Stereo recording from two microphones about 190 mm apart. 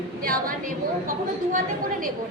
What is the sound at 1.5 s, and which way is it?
Speech, 45° right (ahead or behind).